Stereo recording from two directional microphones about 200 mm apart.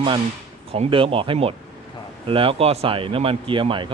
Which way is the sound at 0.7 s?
25° right (ahead or behind).